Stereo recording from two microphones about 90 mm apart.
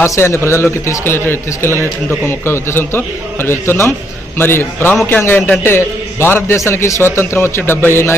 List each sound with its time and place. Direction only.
0.0 s a man's voice: 30° left (ahead or behind)